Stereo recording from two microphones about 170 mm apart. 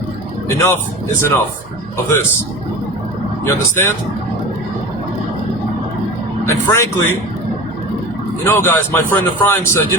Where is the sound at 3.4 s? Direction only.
15° left (ahead or behind).